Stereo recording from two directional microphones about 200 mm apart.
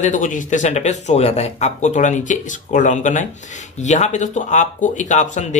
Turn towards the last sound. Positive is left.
turn(degrees=35)  # may be behind; listen again after turning